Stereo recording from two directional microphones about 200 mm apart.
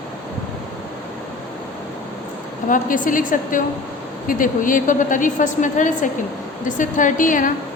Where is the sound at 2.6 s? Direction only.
40° left (ahead or behind).